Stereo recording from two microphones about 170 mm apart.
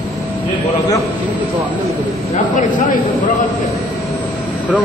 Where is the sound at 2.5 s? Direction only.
50° left (ahead or behind).